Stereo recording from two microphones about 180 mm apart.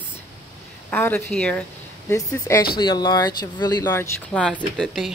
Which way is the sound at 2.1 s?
15° left (ahead or behind).